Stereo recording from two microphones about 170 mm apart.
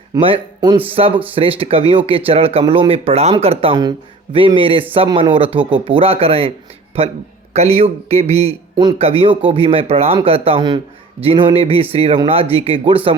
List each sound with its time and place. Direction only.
0.2 s speech: 30° right (ahead or behind)